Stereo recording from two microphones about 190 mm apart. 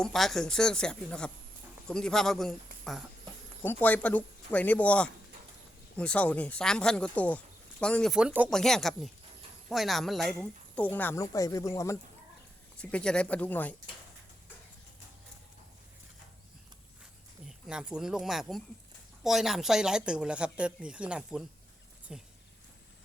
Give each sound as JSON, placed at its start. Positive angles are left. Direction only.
{"t": 0.0, "sound": "speech", "side_deg": 0}
{"t": 17.4, "sound": "speech", "side_deg": -5}